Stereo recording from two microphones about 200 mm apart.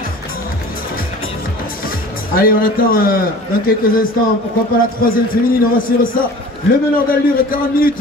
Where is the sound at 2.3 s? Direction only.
45° left (ahead or behind).